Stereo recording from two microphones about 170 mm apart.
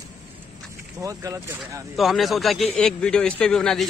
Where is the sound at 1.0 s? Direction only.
20° right (ahead or behind).